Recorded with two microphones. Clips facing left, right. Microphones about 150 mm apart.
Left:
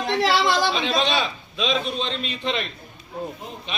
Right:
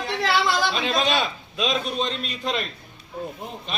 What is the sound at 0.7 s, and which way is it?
A man's voice, 5° right (ahead or behind).